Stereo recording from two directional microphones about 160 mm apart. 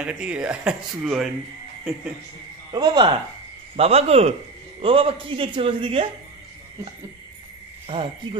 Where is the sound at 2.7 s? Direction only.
25° right (ahead or behind).